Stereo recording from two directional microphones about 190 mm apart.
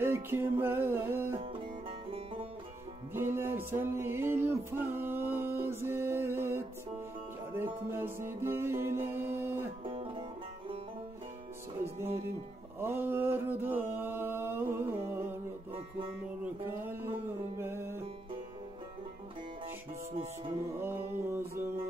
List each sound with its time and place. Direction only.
0.0 s music: 10° right (ahead or behind)
1.4 s music: 30° right (ahead or behind)
3.1 s music: 10° right (ahead or behind)
9.8 s music: 25° right (ahead or behind)
12.8 s mantra: 10° right (ahead or behind)
17.6 s music: 10° right (ahead or behind)
20.8 s music: 10° right (ahead or behind)